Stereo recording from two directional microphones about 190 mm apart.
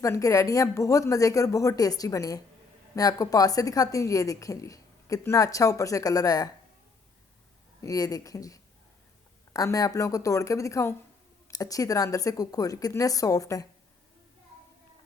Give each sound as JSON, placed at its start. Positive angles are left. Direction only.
{"t": 0.0, "sound": "a woman's voice", "side_deg": 15}
{"t": 7.8, "sound": "a woman's voice", "side_deg": 20}